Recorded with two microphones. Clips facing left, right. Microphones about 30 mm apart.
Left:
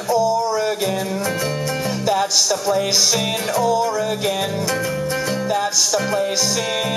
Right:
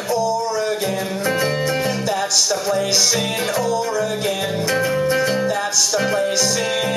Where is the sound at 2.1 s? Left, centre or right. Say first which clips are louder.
Left 5 dB; centre.